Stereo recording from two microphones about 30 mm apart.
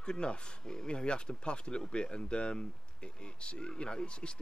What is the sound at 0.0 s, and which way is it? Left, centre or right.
Speech, left.